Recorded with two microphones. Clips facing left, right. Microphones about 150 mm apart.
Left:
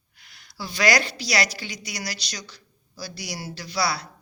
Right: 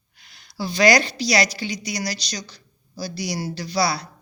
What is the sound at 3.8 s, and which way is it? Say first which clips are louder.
Speech: right 3 dB; 20° right (ahead or behind).